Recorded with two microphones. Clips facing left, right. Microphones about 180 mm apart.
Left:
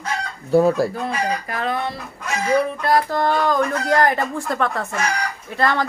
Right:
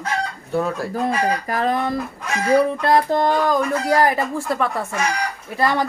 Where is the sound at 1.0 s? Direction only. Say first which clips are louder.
Right 3 dB; 40° right (ahead or behind).